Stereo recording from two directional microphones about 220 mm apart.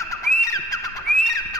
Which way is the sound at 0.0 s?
15° left (ahead or behind).